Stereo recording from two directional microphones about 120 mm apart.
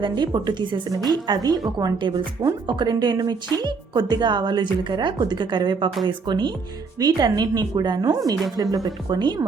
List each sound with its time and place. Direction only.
0.0 s a woman's voice: 40° right (ahead or behind)